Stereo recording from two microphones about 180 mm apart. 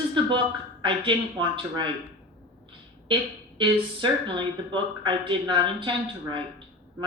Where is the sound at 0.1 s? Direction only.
25° right (ahead or behind).